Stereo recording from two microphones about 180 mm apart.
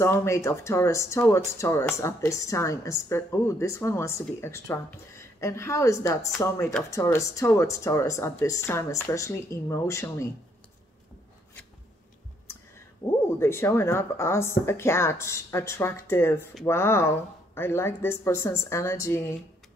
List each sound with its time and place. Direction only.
0.0 s speech: 15° left (ahead or behind)
13.0 s a sound: 15° left (ahead or behind)
13.4 s speech: 15° left (ahead or behind)